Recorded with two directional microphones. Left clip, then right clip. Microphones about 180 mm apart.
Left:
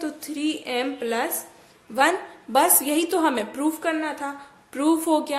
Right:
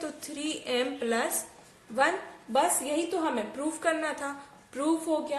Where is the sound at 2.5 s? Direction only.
25° left (ahead or behind).